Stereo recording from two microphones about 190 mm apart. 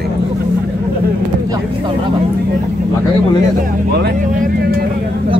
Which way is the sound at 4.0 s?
55° right (ahead or behind).